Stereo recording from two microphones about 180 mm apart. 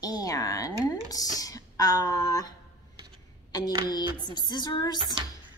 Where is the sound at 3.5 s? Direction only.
20° left (ahead or behind).